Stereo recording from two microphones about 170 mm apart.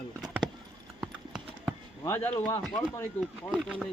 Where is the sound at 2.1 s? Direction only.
15° left (ahead or behind).